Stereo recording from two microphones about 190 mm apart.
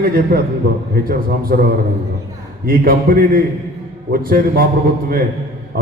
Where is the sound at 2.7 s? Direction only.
50° right (ahead or behind).